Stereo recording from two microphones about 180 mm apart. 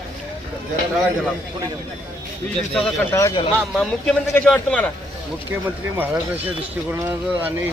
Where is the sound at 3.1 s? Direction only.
20° left (ahead or behind).